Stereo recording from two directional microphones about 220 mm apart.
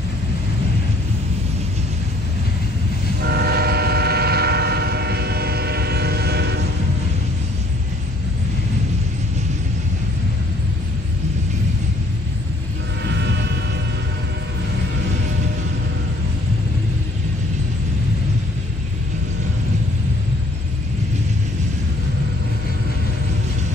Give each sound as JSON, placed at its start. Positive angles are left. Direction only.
{"t": 3.2, "sound": "train", "side_deg": -45}
{"t": 13.0, "sound": "music", "side_deg": -50}